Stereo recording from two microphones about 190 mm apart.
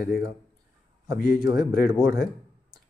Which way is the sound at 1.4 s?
20° right (ahead or behind).